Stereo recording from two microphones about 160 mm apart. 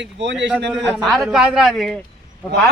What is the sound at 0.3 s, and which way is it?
Speech, 90° right.